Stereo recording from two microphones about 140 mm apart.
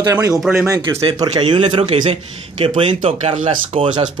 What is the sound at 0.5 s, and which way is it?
Speech, 15° right (ahead or behind).